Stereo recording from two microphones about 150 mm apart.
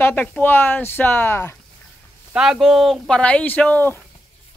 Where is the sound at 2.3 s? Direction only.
5° right (ahead or behind).